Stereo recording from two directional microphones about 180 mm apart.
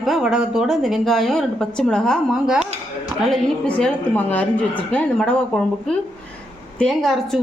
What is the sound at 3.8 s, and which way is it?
A woman's voice, 5° left (ahead or behind).